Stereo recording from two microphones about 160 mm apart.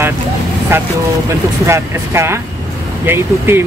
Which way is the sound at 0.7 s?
15° right (ahead or behind).